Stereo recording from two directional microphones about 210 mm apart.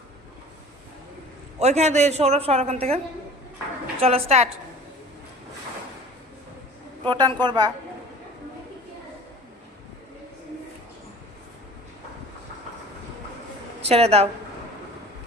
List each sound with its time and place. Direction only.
1.5 s a man's voice: 30° right (ahead or behind)
4.0 s a woman's voice: 30° right (ahead or behind)
7.1 s a woman's voice: 20° right (ahead or behind)
13.8 s a woman's voice: 30° right (ahead or behind)